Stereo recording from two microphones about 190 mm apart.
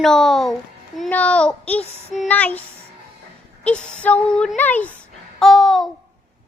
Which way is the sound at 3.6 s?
5° left (ahead or behind).